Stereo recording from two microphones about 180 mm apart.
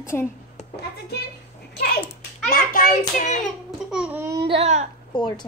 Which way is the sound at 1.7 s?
60° left (ahead or behind).